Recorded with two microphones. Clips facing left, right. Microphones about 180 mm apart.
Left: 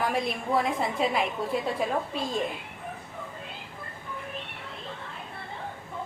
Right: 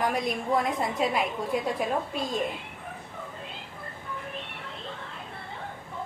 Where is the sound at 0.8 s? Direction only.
Centre (ahead or behind).